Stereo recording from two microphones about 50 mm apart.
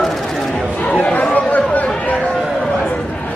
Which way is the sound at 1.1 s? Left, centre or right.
Left.